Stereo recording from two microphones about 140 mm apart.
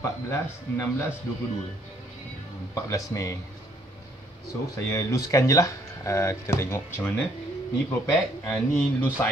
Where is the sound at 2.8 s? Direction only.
25° left (ahead or behind).